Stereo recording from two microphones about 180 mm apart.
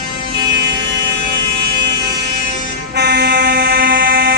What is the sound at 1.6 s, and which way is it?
Fire alarm, 70° right (ahead or behind).